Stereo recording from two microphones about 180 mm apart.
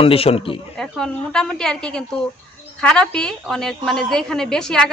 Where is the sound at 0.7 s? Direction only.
5° left (ahead or behind).